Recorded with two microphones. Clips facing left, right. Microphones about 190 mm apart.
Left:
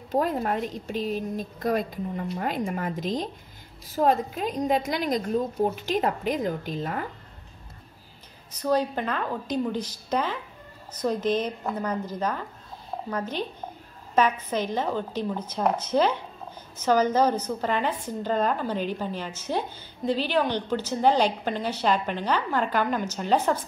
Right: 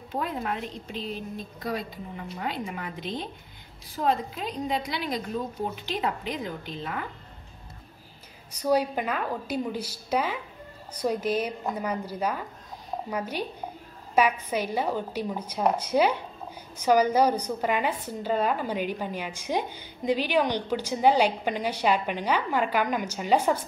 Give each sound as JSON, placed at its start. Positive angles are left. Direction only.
{"t": 0.1, "sound": "a woman's voice", "side_deg": 40}
{"t": 8.5, "sound": "a woman's voice", "side_deg": -10}